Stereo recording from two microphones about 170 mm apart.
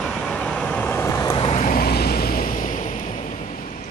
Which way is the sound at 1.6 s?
55° left (ahead or behind).